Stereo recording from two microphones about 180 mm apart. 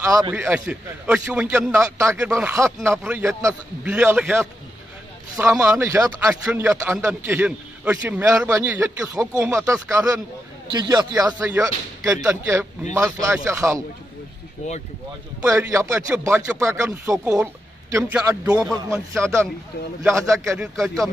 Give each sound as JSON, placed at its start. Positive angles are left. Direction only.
{"t": 0.0, "sound": "a man's voice", "side_deg": -15}
{"t": 14.6, "sound": "speech", "side_deg": 40}
{"t": 15.4, "sound": "a man's voice", "side_deg": -15}
{"t": 20.5, "sound": "speech", "side_deg": 0}